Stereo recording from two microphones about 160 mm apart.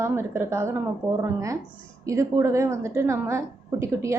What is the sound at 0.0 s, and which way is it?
A woman's voice, 15° right (ahead or behind).